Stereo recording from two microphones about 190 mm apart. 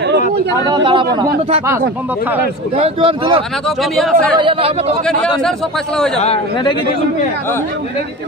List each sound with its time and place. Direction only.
0.8 s a man's voice: 25° right (ahead or behind)
2.8 s a man's voice: 30° right (ahead or behind)
3.9 s speech: centre (ahead or behind)
4.4 s a man's voice: 30° right (ahead or behind)
5.0 s speech: 5° left (ahead or behind)
6.2 s a man's voice: 30° left (ahead or behind)